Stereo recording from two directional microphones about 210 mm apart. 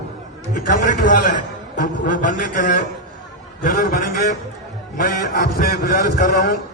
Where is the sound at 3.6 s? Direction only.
45° left (ahead or behind).